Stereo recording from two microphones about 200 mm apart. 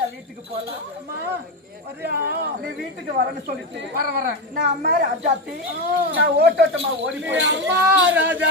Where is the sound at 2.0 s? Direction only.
55° right (ahead or behind).